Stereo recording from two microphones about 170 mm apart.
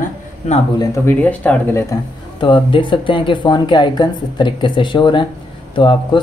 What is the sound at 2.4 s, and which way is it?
Speech, 30° left (ahead or behind).